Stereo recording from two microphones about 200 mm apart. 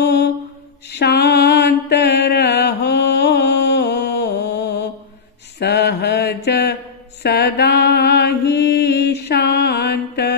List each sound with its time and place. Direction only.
0.0 s mantra: 55° left (ahead or behind)